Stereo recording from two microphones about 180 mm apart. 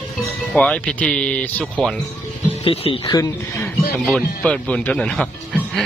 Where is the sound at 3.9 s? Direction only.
5° left (ahead or behind).